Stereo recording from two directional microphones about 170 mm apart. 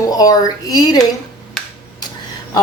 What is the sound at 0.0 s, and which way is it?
Speech, 20° left (ahead or behind).